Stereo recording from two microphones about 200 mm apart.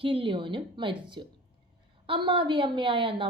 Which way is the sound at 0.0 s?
25° right (ahead or behind).